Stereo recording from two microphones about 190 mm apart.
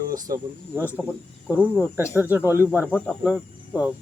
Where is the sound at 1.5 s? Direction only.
10° left (ahead or behind).